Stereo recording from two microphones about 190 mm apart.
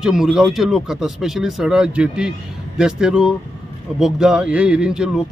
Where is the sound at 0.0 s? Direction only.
5° right (ahead or behind).